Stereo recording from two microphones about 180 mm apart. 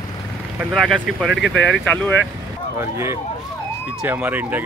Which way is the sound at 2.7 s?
15° right (ahead or behind).